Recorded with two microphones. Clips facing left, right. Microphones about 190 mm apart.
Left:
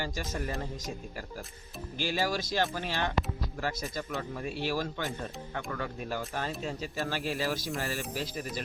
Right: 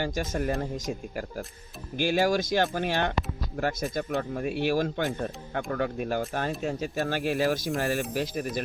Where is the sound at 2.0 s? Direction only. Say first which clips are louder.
Right 7 dB; 55° right (ahead or behind).